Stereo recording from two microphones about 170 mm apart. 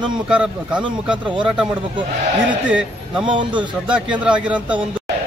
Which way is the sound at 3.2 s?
30° right (ahead or behind).